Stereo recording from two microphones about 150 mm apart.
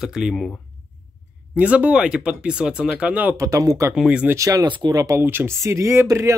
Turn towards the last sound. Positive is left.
turn(degrees=-20)  # may be behind; listen again after turning